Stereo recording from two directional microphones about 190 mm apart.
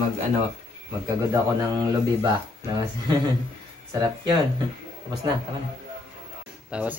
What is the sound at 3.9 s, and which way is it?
Speech, 20° right (ahead or behind).